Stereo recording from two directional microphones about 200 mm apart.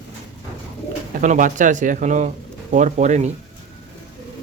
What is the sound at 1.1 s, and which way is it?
Speech, 40° right (ahead or behind).